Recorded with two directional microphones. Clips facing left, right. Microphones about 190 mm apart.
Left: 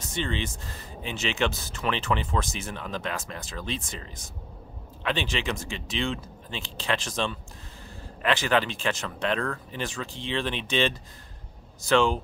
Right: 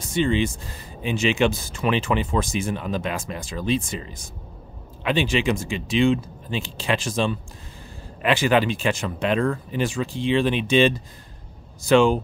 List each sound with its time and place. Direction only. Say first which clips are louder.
0.0 s speech: right 9 dB; 10° right (ahead or behind)